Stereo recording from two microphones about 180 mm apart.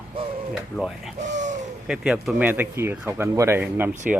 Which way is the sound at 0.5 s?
5° right (ahead or behind).